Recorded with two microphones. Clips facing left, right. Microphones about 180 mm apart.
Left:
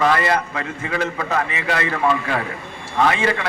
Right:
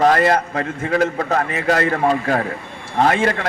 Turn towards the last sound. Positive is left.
turn(degrees=-50)  # may be behind; listen again after turning